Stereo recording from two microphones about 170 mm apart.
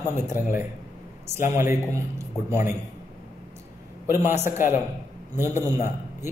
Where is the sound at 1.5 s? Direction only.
15° right (ahead or behind).